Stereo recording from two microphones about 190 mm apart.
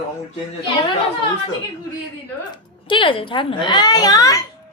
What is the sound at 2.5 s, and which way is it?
A woman's voice, 25° left (ahead or behind).